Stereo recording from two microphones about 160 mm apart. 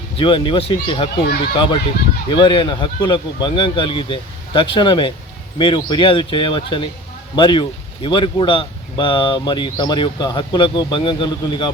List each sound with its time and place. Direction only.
0.2 s speech: 30° left (ahead or behind)